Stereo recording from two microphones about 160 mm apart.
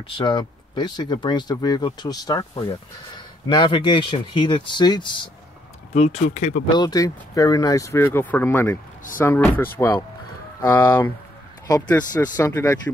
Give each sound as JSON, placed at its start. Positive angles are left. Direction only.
{"t": 0.2, "sound": "speech", "side_deg": 30}
{"t": 5.9, "sound": "speech", "side_deg": 45}
{"t": 6.7, "sound": "speech", "side_deg": 25}